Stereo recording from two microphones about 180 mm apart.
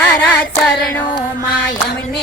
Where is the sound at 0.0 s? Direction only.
10° left (ahead or behind).